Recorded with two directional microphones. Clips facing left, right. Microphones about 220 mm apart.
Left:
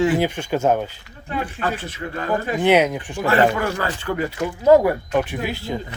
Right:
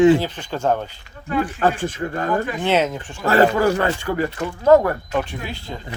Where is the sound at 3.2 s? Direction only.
40° right (ahead or behind).